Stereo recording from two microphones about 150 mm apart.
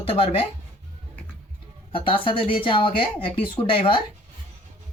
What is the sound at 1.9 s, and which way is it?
Speech, 35° left (ahead or behind).